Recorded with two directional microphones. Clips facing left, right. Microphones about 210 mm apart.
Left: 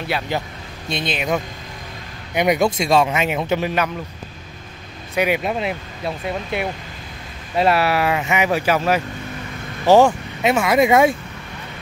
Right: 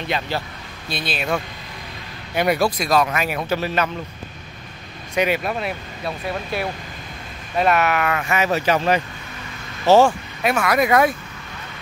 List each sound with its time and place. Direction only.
0.0 s speech: 10° left (ahead or behind)
0.8 s speech: 20° left (ahead or behind)
5.1 s speech: 10° left (ahead or behind)
5.4 s speech: 20° left (ahead or behind)